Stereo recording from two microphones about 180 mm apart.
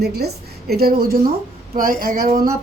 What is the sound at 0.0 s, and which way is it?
A woman's voice, 65° right (ahead or behind).